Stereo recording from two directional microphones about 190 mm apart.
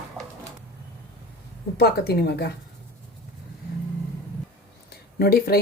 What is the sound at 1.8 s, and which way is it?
Speech, 55° left (ahead or behind).